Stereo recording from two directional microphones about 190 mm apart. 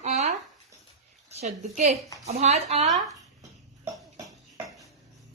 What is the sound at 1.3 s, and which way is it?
A woman's voice, 35° right (ahead or behind).